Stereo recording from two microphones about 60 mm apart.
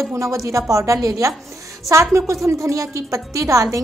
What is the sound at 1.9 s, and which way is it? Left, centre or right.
A woman's voice, right.